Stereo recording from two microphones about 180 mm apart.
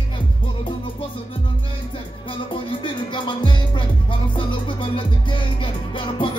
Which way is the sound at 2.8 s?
25° left (ahead or behind).